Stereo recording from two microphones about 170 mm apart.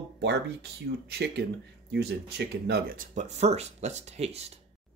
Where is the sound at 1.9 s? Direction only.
90° right; by 4.5 s 40° right (ahead or behind).